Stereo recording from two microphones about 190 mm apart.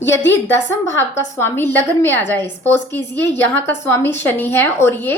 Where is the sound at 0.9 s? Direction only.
80° left.